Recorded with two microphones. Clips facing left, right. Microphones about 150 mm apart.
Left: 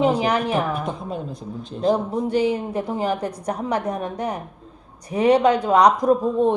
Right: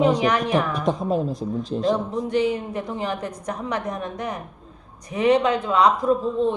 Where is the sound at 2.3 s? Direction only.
30° left (ahead or behind).